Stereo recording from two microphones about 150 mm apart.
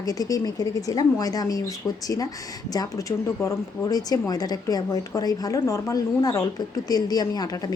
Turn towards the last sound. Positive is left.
turn(degrees=25)  # may be behind; listen again after turning